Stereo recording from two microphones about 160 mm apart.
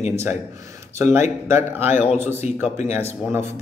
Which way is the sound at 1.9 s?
45° left (ahead or behind).